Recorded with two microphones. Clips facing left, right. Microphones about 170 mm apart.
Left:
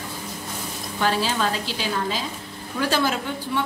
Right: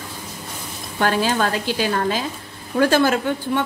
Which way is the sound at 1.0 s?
55° right (ahead or behind).